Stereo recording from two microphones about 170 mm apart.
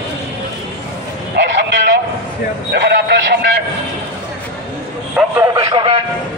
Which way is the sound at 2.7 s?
80° right.